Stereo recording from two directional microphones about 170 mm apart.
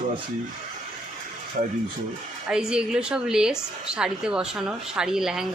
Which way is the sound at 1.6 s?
50° right (ahead or behind).